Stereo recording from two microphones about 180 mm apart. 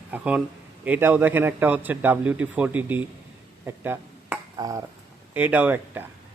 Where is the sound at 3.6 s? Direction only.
10° right (ahead or behind).